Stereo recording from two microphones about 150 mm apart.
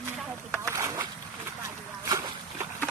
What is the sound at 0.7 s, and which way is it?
Boat, 20° right (ahead or behind).